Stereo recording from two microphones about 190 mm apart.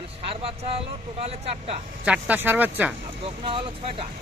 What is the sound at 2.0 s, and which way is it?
Speech, 5° right (ahead or behind).